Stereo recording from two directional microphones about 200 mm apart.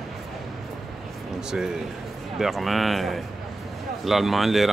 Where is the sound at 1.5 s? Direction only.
5° right (ahead or behind).